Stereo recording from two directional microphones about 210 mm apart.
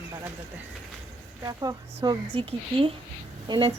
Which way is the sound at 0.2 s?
10° right (ahead or behind).